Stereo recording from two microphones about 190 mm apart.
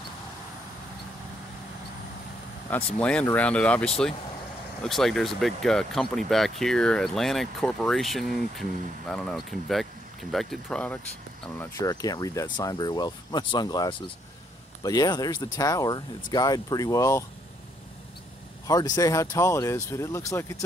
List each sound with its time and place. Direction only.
2.7 s speech: 5° left (ahead or behind)
18.7 s speech: 20° left (ahead or behind)